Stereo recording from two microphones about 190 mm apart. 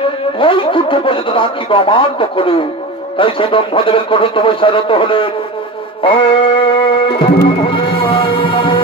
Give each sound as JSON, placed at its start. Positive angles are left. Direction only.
{"t": 0.4, "sound": "speech", "side_deg": 25}
{"t": 6.0, "sound": "a sound", "side_deg": 25}
{"t": 7.4, "sound": "music", "side_deg": 25}